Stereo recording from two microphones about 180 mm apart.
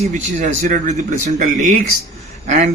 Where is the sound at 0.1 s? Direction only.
45° right (ahead or behind).